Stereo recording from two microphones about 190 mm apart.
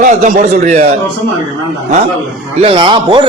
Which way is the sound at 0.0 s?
40° right (ahead or behind).